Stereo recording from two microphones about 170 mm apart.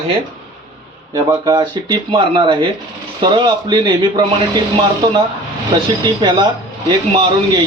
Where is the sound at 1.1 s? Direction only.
20° right (ahead or behind).